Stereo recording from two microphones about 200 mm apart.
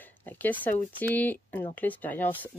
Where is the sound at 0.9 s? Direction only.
10° left (ahead or behind).